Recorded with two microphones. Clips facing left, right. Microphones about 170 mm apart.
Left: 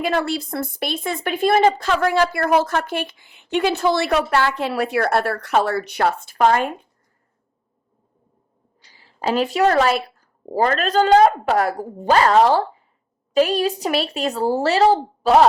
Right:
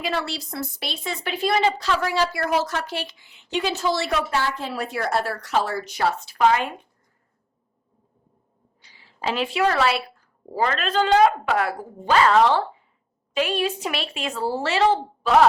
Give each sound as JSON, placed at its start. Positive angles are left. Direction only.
{"t": 0.0, "sound": "speech", "side_deg": 50}
{"t": 8.9, "sound": "a woman's voice", "side_deg": 40}